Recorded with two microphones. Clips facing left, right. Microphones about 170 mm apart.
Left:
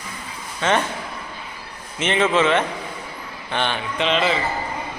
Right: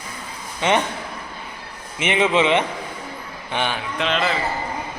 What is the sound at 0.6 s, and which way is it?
Speech, 15° right (ahead or behind).